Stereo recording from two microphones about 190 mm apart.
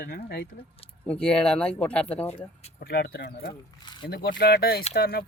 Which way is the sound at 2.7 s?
55° left (ahead or behind).